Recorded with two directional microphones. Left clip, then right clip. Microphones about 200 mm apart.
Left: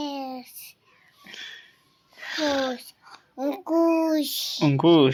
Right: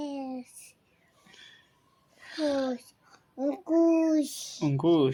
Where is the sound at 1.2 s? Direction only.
30° left (ahead or behind).